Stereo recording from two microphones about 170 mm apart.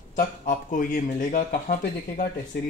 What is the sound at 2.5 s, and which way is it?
Speech, 65° left (ahead or behind).